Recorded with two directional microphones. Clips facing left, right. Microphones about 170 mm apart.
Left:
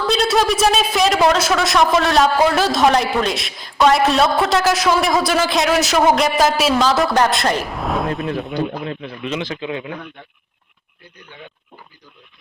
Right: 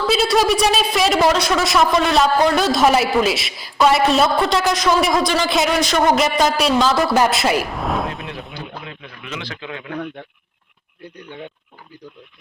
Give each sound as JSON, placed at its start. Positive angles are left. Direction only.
{"t": 0.1, "sound": "a man's voice", "side_deg": 0}
{"t": 8.5, "sound": "a man's voice", "side_deg": 35}